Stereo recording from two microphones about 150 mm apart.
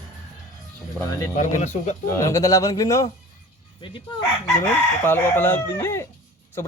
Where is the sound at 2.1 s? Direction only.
20° left (ahead or behind).